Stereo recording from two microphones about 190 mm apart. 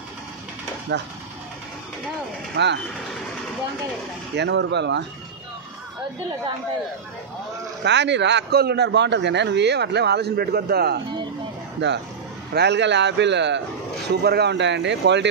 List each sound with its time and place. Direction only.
2.5 s a man's voice: 65° right (ahead or behind)
4.4 s speech: 65° right (ahead or behind)
7.8 s a man's voice: 65° right (ahead or behind)
11.8 s speech: 65° right (ahead or behind)